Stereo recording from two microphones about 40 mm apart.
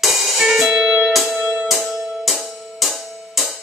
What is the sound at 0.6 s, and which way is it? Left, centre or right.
Music, centre.